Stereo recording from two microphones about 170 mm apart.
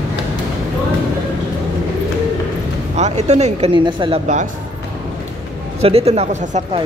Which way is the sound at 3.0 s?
40° right (ahead or behind).